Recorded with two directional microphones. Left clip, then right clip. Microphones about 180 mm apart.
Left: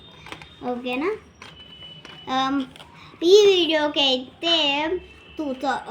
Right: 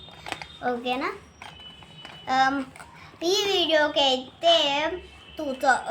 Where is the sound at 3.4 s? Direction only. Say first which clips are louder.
Left 4 dB; 25° right (ahead or behind).